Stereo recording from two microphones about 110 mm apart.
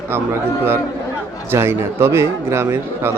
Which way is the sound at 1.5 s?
20° right (ahead or behind).